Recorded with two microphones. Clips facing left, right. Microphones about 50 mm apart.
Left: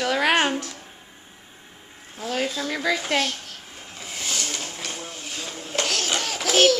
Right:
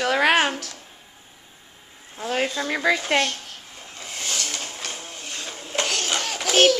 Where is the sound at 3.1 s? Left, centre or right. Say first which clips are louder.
Right 2 dB; centre.